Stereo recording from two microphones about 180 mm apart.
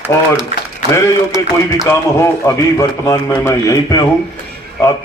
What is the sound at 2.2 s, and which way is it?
A man's voice, 15° left (ahead or behind).